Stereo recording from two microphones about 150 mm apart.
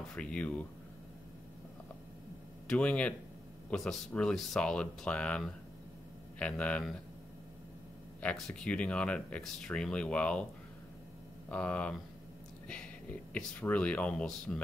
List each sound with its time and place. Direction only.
0.1 s speech: 5° left (ahead or behind)
2.7 s speech: 10° left (ahead or behind)
6.4 s speech: 10° left (ahead or behind)
8.2 s speech: 5° left (ahead or behind)
11.5 s speech: 10° left (ahead or behind)